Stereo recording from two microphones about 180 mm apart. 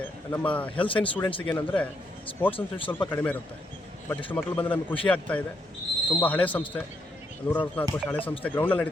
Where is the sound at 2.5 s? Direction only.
30° left (ahead or behind).